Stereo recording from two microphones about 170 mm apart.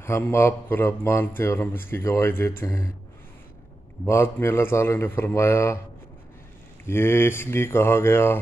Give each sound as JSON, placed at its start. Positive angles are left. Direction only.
{"t": 0.0, "sound": "speech", "side_deg": 15}
{"t": 4.0, "sound": "speech", "side_deg": 15}
{"t": 6.9, "sound": "speech", "side_deg": 15}